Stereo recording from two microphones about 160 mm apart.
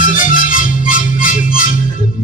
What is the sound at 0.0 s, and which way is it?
Music, 55° left (ahead or behind).